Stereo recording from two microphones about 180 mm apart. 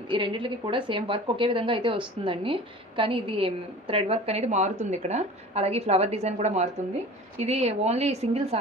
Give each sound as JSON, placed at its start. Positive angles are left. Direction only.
{"t": 0.1, "sound": "a woman's voice", "side_deg": -30}